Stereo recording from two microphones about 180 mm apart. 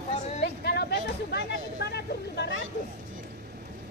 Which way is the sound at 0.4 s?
65° left (ahead or behind).